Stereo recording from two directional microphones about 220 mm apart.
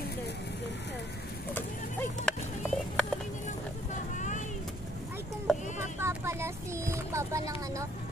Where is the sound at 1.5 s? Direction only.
5° left (ahead or behind).